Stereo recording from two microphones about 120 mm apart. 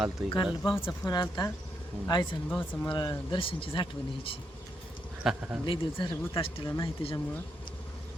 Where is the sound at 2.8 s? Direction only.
35° left (ahead or behind).